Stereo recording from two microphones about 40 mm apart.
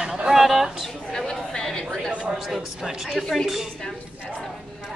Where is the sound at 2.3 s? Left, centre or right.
Centre.